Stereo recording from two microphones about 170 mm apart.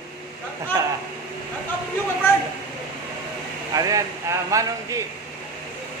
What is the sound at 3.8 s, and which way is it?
A man's voice, 20° right (ahead or behind).